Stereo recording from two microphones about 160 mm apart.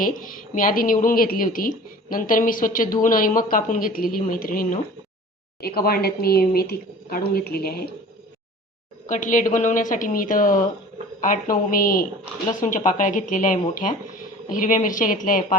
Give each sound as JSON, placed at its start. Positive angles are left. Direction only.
{"t": 0.0, "sound": "a woman's voice", "side_deg": 60}
{"t": 5.5, "sound": "speech", "side_deg": 75}
{"t": 9.0, "sound": "a woman's voice", "side_deg": 50}